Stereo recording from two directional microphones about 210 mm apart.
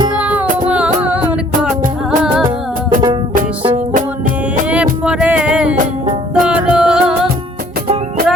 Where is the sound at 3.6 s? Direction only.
20° right (ahead or behind).